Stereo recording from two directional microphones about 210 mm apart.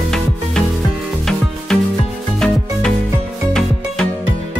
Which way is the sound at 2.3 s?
Centre (ahead or behind).